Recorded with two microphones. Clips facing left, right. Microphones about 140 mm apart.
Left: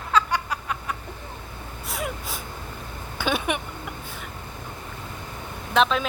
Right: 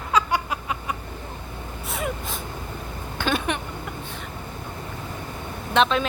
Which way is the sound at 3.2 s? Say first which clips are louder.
Even; 10° left (ahead or behind).